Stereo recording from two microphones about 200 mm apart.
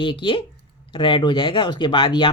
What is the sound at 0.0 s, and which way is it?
Speech, 25° left (ahead or behind).